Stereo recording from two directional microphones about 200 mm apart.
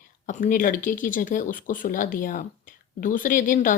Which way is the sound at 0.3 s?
40° left (ahead or behind).